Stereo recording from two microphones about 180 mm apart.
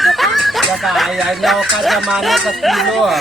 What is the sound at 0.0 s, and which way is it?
Speech, centre (ahead or behind).